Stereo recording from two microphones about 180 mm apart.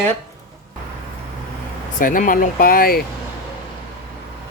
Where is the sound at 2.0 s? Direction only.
50° left (ahead or behind).